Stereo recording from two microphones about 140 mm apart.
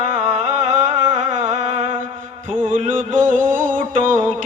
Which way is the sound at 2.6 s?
70° right (ahead or behind).